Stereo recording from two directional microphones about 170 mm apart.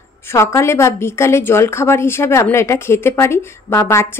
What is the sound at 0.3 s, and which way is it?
A woman's voice, 15° left (ahead or behind).